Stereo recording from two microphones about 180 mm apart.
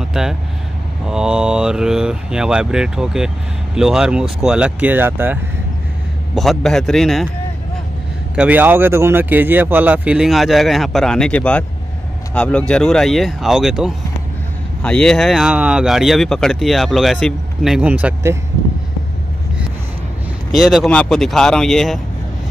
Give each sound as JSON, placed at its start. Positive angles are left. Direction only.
{"t": 0.0, "sound": "vehicle", "side_deg": -5}
{"t": 1.0, "sound": "speech", "side_deg": -5}
{"t": 6.3, "sound": "speech", "side_deg": 0}
{"t": 8.4, "sound": "speech", "side_deg": -10}
{"t": 20.5, "sound": "speech", "side_deg": 0}